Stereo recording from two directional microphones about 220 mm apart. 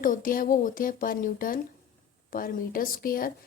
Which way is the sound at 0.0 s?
40° left (ahead or behind).